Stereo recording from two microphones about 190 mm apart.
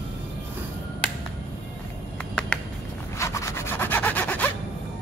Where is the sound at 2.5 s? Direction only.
5° left (ahead or behind).